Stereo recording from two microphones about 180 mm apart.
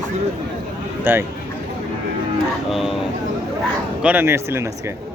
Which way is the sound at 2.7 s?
Centre (ahead or behind).